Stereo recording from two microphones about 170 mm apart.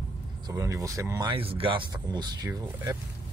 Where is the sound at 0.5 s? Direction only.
20° right (ahead or behind).